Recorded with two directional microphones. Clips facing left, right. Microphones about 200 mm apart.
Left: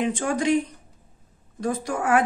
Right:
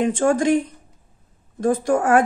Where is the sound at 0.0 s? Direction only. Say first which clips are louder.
Right 6 dB; 50° right (ahead or behind).